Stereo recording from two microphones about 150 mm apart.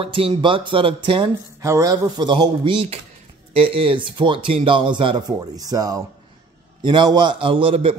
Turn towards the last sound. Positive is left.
turn(degrees=-35)  # may be behind; listen again after turning